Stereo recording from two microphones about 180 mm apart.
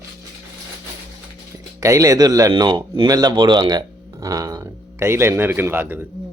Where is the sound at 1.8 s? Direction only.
15° right (ahead or behind).